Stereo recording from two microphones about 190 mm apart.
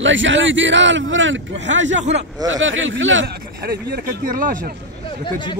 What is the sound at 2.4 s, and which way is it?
Speech, 90° right.